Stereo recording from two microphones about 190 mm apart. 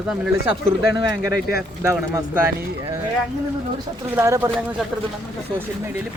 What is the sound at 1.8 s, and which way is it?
Speech, 15° right (ahead or behind).